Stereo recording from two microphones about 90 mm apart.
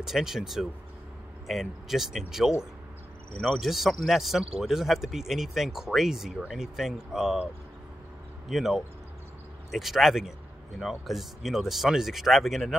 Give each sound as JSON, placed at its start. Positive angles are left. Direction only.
{"t": 0.0, "sound": "speech", "side_deg": -5}
{"t": 8.5, "sound": "speech", "side_deg": -5}